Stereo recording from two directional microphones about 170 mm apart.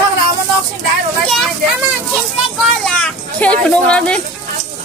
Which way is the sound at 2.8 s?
5° left (ahead or behind).